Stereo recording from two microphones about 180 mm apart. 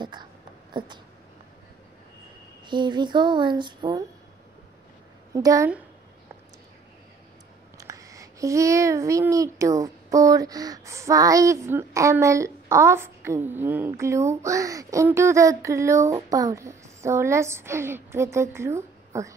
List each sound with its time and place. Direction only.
0.0 s a sound: 25° right (ahead or behind)
2.6 s speech: 25° right (ahead or behind)
5.3 s a child's voice: 20° right (ahead or behind)
7.7 s a child's voice: 20° right (ahead or behind)